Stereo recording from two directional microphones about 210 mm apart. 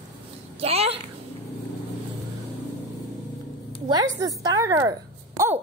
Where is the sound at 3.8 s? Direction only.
20° right (ahead or behind).